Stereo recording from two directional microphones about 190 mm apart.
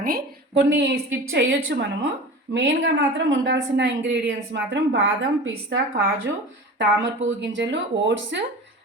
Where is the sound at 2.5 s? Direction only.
90° right; by 4.6 s 70° right (ahead or behind).